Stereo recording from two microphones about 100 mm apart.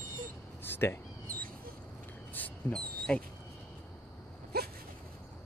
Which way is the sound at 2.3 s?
10° left (ahead or behind).